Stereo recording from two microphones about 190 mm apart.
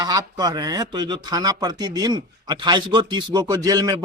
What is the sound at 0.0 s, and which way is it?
Speech, 20° right (ahead or behind).